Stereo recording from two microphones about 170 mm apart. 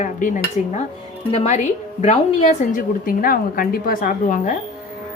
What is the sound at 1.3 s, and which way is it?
A woman's voice, 35° left (ahead or behind).